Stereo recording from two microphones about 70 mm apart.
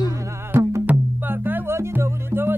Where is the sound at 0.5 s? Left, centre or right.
Right.